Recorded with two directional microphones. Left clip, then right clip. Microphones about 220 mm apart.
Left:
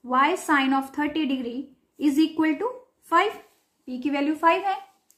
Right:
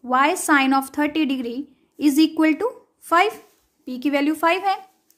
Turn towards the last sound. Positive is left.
turn(degrees=-50)  # may be behind; listen again after turning